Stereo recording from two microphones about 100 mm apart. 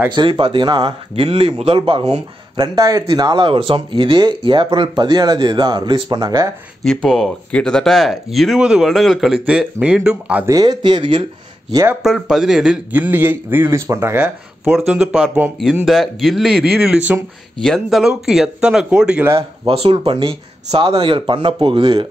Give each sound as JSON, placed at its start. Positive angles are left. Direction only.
{"t": 0.1, "sound": "speech", "side_deg": -55}
{"t": 1.1, "sound": "speech", "side_deg": -80}
{"t": 1.8, "sound": "speech", "side_deg": -55}
{"t": 2.5, "sound": "speech", "side_deg": -45}
{"t": 6.8, "sound": "speech", "side_deg": 5}
{"t": 10.4, "sound": "speech", "side_deg": -40}
{"t": 12.0, "sound": "speech", "side_deg": -5}
{"t": 12.9, "sound": "speech", "side_deg": -20}
{"t": 14.9, "sound": "speech", "side_deg": -5}
{"t": 19.6, "sound": "speech", "side_deg": -75}
{"t": 20.1, "sound": "speech", "side_deg": -65}